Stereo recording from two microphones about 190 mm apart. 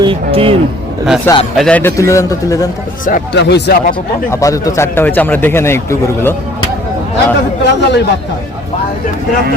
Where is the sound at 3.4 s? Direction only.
60° left (ahead or behind).